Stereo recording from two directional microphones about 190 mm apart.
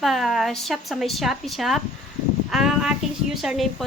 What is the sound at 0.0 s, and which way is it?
Speech, centre (ahead or behind).